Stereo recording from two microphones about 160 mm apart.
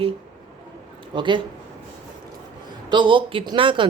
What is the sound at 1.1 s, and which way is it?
Speech, 30° right (ahead or behind).